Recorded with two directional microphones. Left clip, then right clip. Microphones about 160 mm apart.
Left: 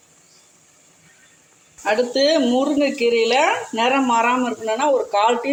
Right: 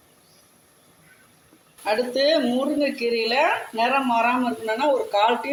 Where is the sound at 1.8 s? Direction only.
20° left (ahead or behind).